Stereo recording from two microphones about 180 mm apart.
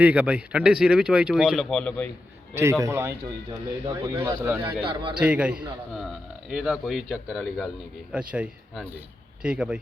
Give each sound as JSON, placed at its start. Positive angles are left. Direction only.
{"t": 0.0, "sound": "speech", "side_deg": -10}
{"t": 2.8, "sound": "speech", "side_deg": -15}
{"t": 4.8, "sound": "a man's voice", "side_deg": -30}
{"t": 5.1, "sound": "speech", "side_deg": -5}